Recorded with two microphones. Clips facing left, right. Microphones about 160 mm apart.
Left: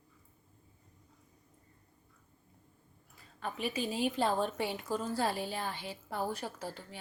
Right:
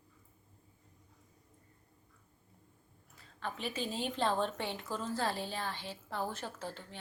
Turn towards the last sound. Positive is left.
turn(degrees=10)  # may be behind; listen again after turning